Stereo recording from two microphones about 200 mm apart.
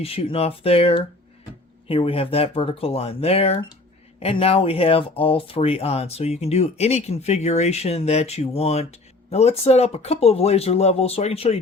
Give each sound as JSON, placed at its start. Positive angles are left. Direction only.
{"t": 0.0, "sound": "speech", "side_deg": 30}